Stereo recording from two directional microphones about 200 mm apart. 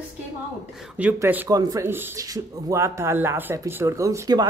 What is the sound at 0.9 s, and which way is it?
Speech, 10° right (ahead or behind).